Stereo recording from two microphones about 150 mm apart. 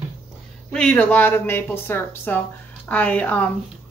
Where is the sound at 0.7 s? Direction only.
10° left (ahead or behind).